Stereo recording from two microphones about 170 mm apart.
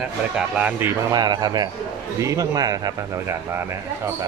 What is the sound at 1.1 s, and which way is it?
Speech, 25° right (ahead or behind).